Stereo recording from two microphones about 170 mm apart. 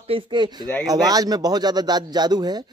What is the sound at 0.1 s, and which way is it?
A man's voice, 25° right (ahead or behind).